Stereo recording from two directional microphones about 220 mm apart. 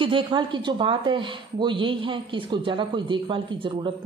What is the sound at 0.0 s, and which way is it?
Speech, 20° right (ahead or behind).